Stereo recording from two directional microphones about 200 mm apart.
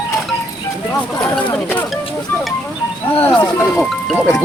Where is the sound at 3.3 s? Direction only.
20° left (ahead or behind).